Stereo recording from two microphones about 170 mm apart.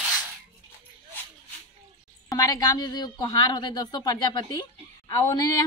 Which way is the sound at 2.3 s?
20° left (ahead or behind).